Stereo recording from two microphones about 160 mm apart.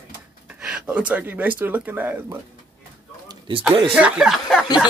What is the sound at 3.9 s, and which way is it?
Speech, 5° right (ahead or behind).